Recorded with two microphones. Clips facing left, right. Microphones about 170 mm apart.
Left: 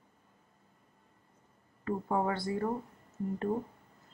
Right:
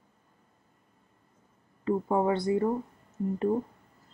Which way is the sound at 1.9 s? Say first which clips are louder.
Right 6 dB; 20° right (ahead or behind).